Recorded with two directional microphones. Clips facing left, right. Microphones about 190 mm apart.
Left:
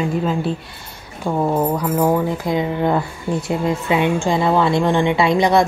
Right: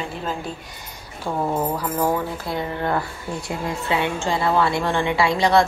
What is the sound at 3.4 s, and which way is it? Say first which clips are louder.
A woman's voice: left 5 dB; 20° left (ahead or behind).